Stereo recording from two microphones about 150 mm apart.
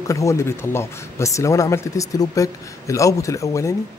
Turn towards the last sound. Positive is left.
turn(degrees=20)  # may be behind; listen again after turning